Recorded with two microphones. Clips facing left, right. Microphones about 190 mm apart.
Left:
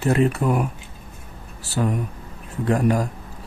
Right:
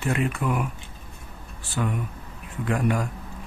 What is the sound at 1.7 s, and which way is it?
Speech, 40° left (ahead or behind).